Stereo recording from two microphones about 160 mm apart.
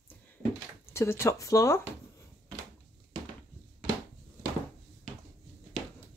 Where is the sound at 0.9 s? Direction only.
15° left (ahead or behind).